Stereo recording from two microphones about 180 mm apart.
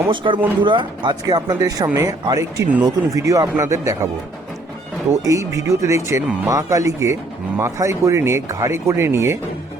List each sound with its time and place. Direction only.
0.1 s speech: 25° right (ahead or behind)
5.2 s speech: 20° right (ahead or behind)